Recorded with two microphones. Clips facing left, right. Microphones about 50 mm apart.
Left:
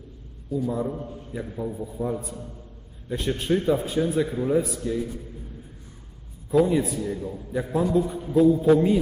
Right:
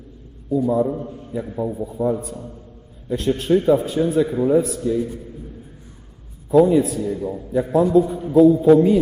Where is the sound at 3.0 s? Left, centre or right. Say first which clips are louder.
Right 6 dB; centre.